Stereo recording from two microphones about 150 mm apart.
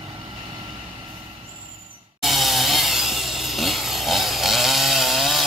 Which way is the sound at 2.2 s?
Centre (ahead or behind).